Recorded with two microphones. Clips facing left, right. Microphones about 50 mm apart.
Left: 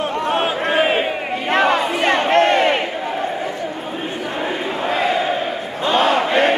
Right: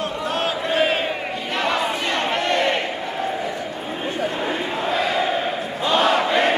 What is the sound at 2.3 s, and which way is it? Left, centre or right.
Crowd, left.